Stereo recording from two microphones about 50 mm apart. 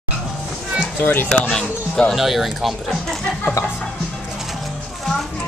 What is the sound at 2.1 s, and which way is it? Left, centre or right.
Speech, centre.